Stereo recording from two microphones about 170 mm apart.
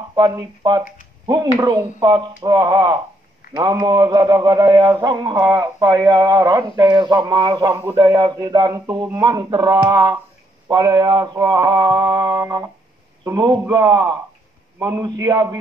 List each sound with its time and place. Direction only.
0.1 s speech: 25° right (ahead or behind)